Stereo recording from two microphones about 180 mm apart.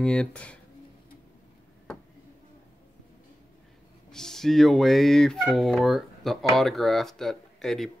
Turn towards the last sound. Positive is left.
turn(degrees=0)  # may be behind; listen again after turning